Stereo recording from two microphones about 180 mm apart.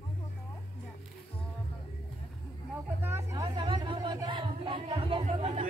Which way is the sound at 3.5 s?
30° right (ahead or behind).